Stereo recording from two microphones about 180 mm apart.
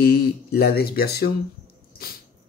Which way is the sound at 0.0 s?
60° left (ahead or behind).